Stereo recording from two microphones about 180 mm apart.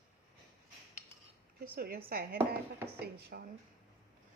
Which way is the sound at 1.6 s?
55° right (ahead or behind).